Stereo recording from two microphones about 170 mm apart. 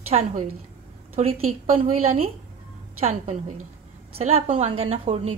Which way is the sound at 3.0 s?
35° right (ahead or behind).